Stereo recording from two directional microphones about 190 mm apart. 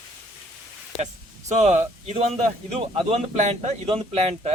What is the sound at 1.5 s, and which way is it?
Speech, 35° right (ahead or behind).